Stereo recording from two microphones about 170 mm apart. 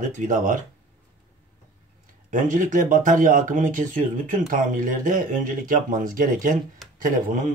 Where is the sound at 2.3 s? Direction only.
50° right (ahead or behind).